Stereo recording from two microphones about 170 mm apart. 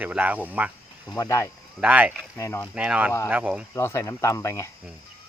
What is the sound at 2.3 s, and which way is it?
Speech, 15° left (ahead or behind).